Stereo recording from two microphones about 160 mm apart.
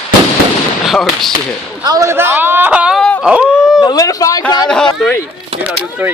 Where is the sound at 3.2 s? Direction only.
5° right (ahead or behind).